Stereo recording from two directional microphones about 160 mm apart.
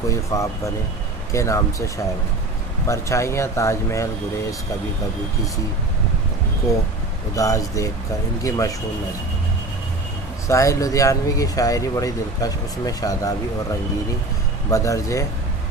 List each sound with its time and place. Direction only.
0.1 s speech: 20° left (ahead or behind)
2.9 s speech: 20° left (ahead or behind)
7.3 s speech: 20° left (ahead or behind)
10.5 s speech: 20° left (ahead or behind)
14.7 s speech: 20° left (ahead or behind)